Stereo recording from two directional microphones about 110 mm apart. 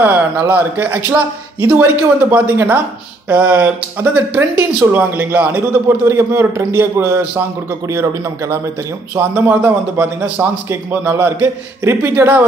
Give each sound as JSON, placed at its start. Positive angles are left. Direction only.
{"t": 0.0, "sound": "speech", "side_deg": -15}